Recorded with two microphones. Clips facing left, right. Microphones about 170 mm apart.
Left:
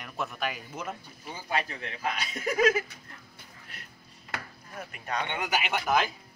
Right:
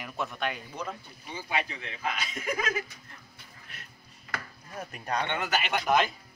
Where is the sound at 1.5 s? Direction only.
40° left (ahead or behind).